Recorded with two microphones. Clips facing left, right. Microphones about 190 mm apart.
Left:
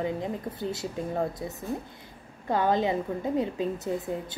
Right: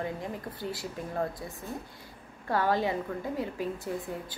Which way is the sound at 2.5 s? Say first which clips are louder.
Left 3 dB; 20° left (ahead or behind).